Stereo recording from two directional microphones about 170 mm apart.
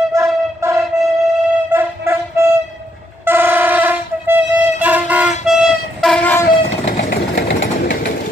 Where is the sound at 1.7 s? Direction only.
15° right (ahead or behind).